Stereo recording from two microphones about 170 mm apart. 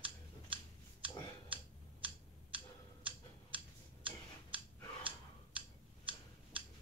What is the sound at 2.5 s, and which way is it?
Tick-tock, 30° right (ahead or behind).